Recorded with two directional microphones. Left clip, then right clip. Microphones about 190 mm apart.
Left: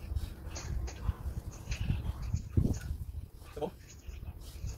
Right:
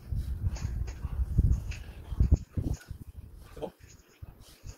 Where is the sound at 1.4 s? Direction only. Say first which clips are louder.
Right 1 dB; 15° right (ahead or behind).